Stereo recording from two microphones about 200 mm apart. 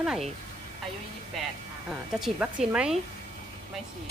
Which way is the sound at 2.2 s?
5° right (ahead or behind).